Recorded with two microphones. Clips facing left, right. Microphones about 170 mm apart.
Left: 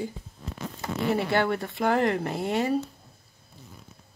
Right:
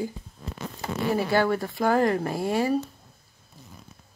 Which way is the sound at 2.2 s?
20° left (ahead or behind).